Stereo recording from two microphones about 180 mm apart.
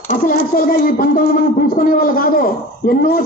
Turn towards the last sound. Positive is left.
turn(degrees=55)  # may be behind; listen again after turning